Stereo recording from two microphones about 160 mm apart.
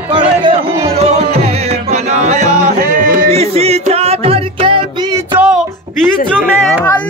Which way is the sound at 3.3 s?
40° right (ahead or behind).